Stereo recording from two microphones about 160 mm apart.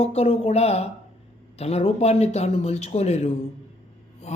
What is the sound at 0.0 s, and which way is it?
A man's voice, 40° left (ahead or behind).